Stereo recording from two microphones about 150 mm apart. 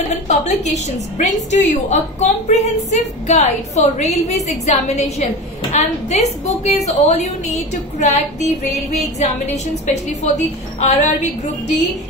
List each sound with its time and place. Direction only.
0.3 s a woman's voice: 50° left (ahead or behind)